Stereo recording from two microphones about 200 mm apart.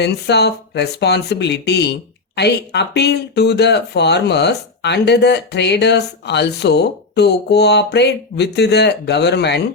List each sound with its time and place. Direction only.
0.0 s speech: 55° left (ahead or behind)